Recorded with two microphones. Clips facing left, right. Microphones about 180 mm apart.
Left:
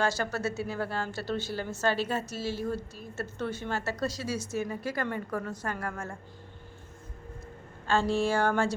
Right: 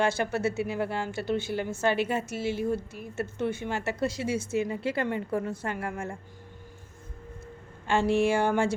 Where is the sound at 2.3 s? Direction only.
55° right (ahead or behind).